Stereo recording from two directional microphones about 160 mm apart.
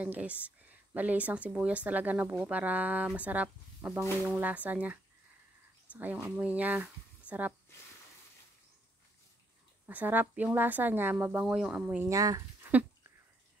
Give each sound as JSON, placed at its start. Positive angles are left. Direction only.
{"t": 0.0, "sound": "speech", "side_deg": -10}
{"t": 5.9, "sound": "speech", "side_deg": -10}
{"t": 9.8, "sound": "speech", "side_deg": -10}
{"t": 12.1, "sound": "speech", "side_deg": -20}